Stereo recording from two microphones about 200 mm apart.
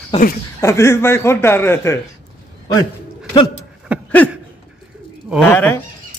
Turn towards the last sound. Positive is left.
turn(degrees=5)  # may be behind; listen again after turning